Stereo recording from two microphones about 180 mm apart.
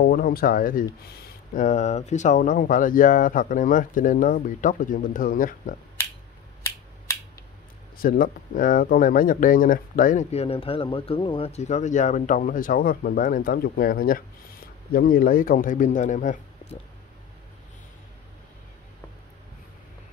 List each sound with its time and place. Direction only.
0.0 s speech: 50° left (ahead or behind)
8.0 s speech: 50° left (ahead or behind)